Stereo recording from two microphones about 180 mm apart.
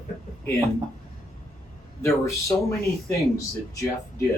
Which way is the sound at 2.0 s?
15° left (ahead or behind).